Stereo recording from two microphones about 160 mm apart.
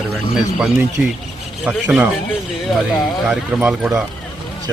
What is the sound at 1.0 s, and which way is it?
A man's voice, 10° right (ahead or behind).